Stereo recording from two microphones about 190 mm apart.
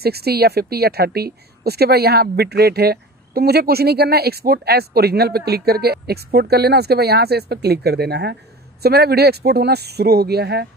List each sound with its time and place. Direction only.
0.0 s speech: 55° right (ahead or behind)